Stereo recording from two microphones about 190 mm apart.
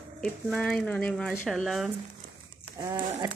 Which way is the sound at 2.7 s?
25° right (ahead or behind).